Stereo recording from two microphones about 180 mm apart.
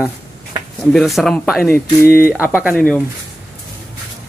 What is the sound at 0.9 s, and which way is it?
Speech, centre (ahead or behind).